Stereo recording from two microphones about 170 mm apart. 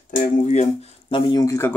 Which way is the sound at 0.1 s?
45° left (ahead or behind).